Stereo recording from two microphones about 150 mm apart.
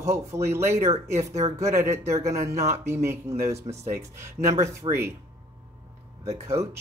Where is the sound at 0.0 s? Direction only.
20° right (ahead or behind).